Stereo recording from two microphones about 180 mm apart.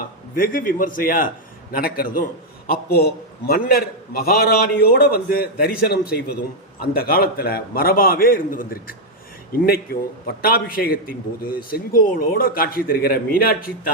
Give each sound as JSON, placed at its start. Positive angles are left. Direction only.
{"t": 0.3, "sound": "a man's voice", "side_deg": 50}